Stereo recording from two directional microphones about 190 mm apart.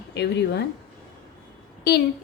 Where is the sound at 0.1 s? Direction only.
60° left (ahead or behind).